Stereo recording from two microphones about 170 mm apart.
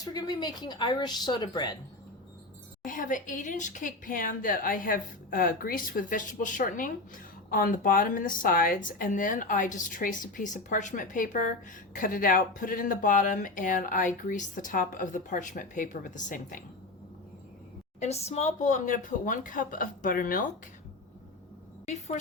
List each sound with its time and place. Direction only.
0.0 s speech: 20° left (ahead or behind)
2.8 s speech: 50° left (ahead or behind)
18.0 s speech: 40° left (ahead or behind); by 20.5 s 55° left (ahead or behind)
21.8 s speech: 45° left (ahead or behind)